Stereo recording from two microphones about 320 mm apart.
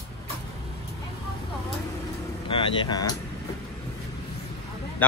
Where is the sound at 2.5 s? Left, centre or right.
Centre.